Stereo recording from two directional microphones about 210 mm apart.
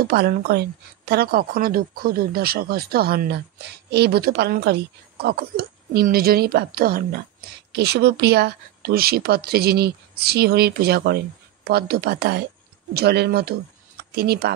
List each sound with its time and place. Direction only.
0.0 s speech: 45° right (ahead or behind)